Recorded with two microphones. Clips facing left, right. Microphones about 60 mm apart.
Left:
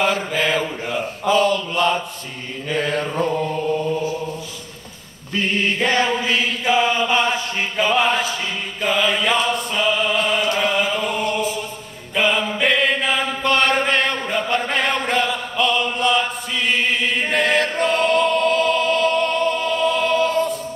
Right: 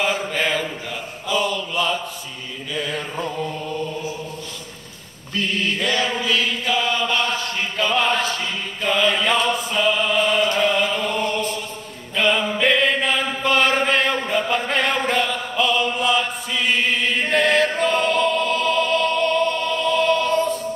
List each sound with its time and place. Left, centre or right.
0.0 s mantra: centre
0.8 s a sound: left
5.4 s chant: left; by 20.5 s centre